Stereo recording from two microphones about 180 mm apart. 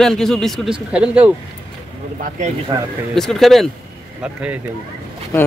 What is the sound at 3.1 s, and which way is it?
Speech, centre (ahead or behind).